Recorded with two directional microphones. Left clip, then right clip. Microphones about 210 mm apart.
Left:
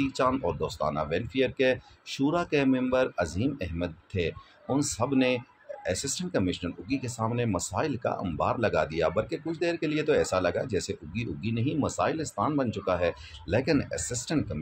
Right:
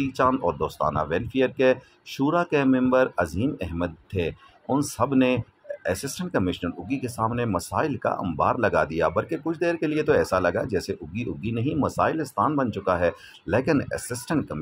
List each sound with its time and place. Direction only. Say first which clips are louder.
0.0 s speech: right 4 dB; 20° right (ahead or behind)